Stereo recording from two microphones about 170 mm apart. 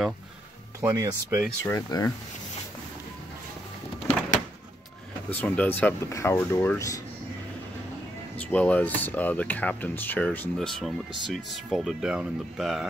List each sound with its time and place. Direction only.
0.7 s speech: 15° right (ahead or behind)
1.6 s speech: 20° left (ahead or behind)
5.4 s speech: 10° left (ahead or behind)
8.4 s speech: 10° left (ahead or behind)